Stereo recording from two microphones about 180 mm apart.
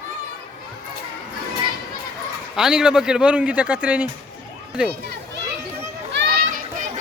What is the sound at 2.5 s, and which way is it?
A man's voice, 5° right (ahead or behind).